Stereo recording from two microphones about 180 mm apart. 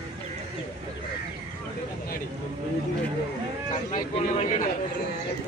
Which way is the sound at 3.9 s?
40° left (ahead or behind).